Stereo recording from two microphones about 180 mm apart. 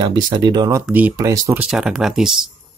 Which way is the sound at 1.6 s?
5° right (ahead or behind).